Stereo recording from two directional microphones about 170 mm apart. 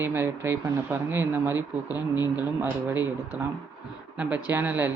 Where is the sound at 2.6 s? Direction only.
10° right (ahead or behind).